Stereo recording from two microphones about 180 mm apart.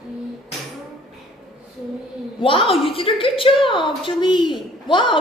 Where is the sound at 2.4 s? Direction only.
30° left (ahead or behind).